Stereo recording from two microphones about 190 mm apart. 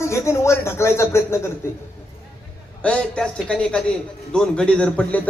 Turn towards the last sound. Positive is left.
turn(degrees=5)  # may be behind; listen again after turning